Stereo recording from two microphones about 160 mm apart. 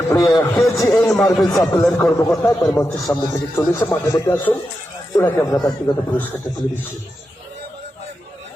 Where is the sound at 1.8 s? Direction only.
5° left (ahead or behind).